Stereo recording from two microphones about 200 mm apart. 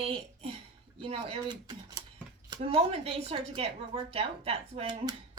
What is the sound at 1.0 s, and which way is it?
A woman's voice, 25° right (ahead or behind).